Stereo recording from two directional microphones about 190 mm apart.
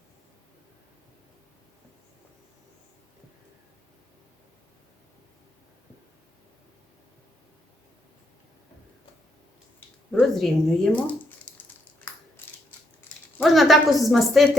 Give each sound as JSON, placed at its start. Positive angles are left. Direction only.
{"t": 10.1, "sound": "speech", "side_deg": 0}
{"t": 11.5, "sound": "a sound", "side_deg": 5}
{"t": 13.4, "sound": "speech", "side_deg": 0}